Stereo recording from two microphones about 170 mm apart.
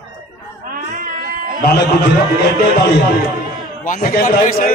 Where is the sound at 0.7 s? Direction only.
55° right (ahead or behind).